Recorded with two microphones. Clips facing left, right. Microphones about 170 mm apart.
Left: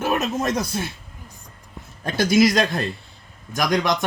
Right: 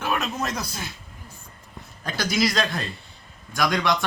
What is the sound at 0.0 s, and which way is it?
Speech, 25° left (ahead or behind).